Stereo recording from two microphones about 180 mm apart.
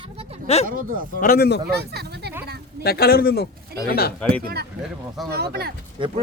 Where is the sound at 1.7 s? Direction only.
60° right (ahead or behind).